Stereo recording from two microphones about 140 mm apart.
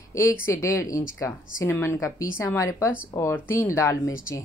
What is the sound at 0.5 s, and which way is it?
A woman's voice, 20° left (ahead or behind).